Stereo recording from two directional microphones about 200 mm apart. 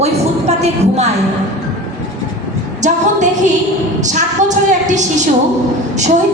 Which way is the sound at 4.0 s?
35° right (ahead or behind).